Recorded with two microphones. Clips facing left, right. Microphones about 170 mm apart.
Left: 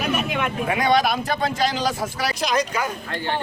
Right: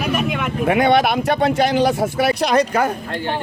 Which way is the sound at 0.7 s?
60° right (ahead or behind).